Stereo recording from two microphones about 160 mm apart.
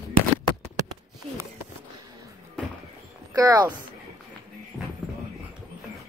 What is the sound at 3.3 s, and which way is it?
Speech, 25° right (ahead or behind).